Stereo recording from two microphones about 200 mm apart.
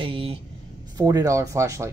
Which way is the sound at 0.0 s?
25° right (ahead or behind).